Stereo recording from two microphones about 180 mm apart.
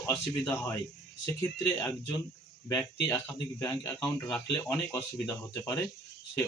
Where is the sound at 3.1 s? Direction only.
20° left (ahead or behind).